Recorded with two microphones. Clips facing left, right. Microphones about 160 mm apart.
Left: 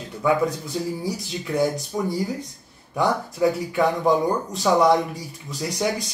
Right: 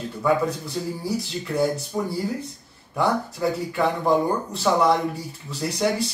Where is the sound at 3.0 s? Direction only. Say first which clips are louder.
Left 2 dB; 15° left (ahead or behind).